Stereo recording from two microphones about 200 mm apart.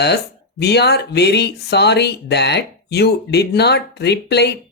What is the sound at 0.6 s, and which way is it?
Speech, 55° left (ahead or behind).